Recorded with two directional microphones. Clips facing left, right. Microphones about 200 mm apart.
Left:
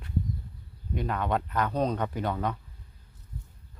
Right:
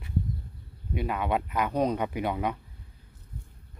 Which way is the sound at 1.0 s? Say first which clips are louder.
Right 1 dB; 10° right (ahead or behind).